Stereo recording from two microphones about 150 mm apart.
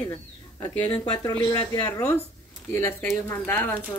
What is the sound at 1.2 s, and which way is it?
Speech, 25° left (ahead or behind).